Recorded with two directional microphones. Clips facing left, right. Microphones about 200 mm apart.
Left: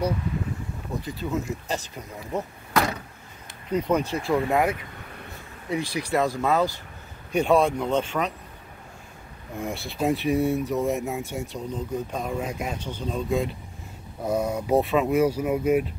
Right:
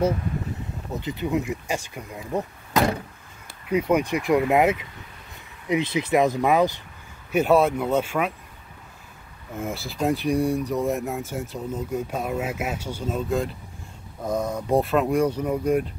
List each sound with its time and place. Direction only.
0.9 s speech: 20° right (ahead or behind)
7.3 s speech: 5° right (ahead or behind)
9.6 s speech: centre (ahead or behind)